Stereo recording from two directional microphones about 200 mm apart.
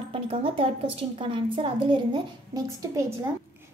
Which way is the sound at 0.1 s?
30° right (ahead or behind).